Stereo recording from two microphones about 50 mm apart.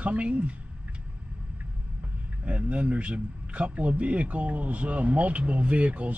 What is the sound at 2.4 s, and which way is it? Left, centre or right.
Speech, right.